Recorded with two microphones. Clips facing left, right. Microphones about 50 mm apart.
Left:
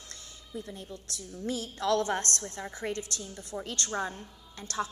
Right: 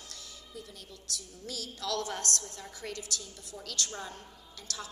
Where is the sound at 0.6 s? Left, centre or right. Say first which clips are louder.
Left 8 dB; left.